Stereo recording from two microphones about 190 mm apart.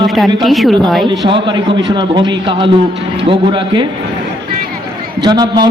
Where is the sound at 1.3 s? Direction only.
25° right (ahead or behind).